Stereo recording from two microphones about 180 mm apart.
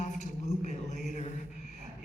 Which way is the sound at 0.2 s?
40° left (ahead or behind).